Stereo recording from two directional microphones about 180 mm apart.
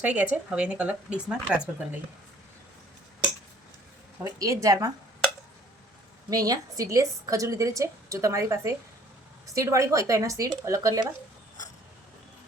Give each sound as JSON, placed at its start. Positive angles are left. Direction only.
{"t": 0.0, "sound": "a woman's voice", "side_deg": -10}
{"t": 4.2, "sound": "a woman's voice", "side_deg": -20}
{"t": 6.3, "sound": "a woman's voice", "side_deg": -20}